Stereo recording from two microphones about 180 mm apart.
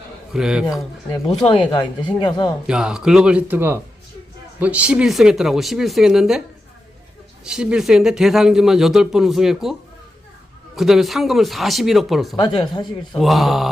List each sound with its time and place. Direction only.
0.3 s speech: 5° right (ahead or behind)
1.4 s speech: 25° left (ahead or behind)
2.6 s speech: 5° right (ahead or behind)
7.4 s speech: 5° right (ahead or behind)
10.8 s speech: centre (ahead or behind)
12.4 s speech: 25° left (ahead or behind)
13.1 s speech: centre (ahead or behind)